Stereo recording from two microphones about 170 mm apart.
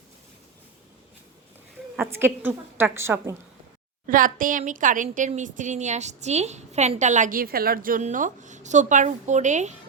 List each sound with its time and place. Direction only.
2.0 s a woman's voice: 15° right (ahead or behind)
4.0 s a woman's voice: 55° right (ahead or behind)